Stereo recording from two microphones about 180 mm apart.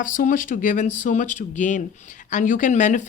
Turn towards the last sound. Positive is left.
turn(degrees=40)  # may be behind; listen again after turning